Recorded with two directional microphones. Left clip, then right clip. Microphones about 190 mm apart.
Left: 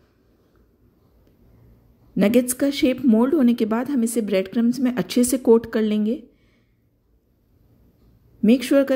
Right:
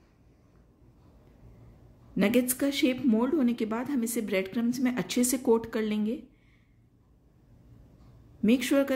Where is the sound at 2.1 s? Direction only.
30° left (ahead or behind).